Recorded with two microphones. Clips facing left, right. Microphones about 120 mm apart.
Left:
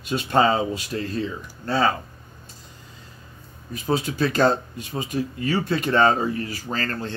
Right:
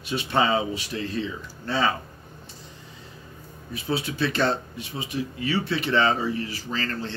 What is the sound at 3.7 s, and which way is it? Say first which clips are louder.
Speech: left 4 dB; 45° left (ahead or behind).